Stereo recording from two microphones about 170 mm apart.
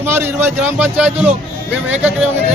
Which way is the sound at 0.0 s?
15° right (ahead or behind).